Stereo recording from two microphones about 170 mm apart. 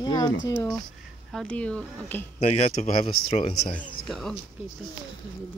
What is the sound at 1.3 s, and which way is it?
Speech, 5° left (ahead or behind).